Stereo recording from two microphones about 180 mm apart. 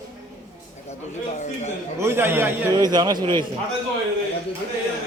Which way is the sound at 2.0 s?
15° right (ahead or behind).